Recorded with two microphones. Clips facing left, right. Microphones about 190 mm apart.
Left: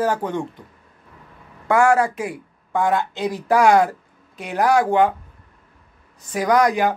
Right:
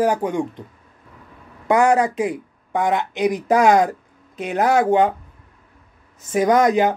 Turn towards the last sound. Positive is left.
turn(degrees=-20)  # may be behind; listen again after turning